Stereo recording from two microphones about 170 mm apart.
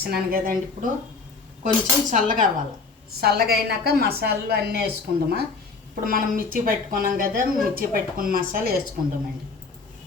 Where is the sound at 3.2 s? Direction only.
65° right (ahead or behind).